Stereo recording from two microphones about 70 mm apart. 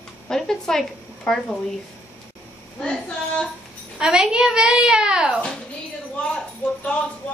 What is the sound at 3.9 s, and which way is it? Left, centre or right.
A child's voice, centre.